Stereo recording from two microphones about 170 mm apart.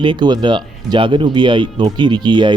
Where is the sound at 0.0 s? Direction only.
25° right (ahead or behind).